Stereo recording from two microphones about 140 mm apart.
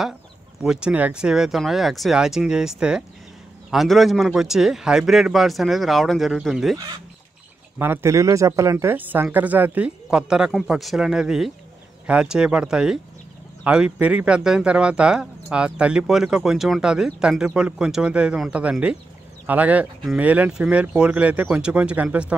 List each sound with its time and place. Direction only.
0.6 s a man's voice: 5° right (ahead or behind)
7.8 s speech: 15° right (ahead or behind)